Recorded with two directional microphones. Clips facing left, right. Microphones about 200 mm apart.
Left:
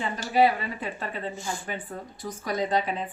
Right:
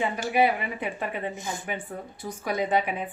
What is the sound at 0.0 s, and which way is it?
Speech, 15° right (ahead or behind).